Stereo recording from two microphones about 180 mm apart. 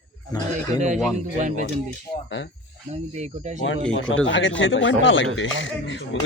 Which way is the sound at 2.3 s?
90° left.